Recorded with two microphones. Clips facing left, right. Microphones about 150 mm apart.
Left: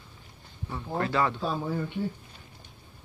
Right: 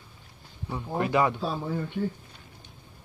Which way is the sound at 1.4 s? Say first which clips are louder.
Even; centre (ahead or behind).